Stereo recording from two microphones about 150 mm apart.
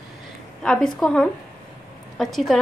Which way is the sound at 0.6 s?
5° left (ahead or behind).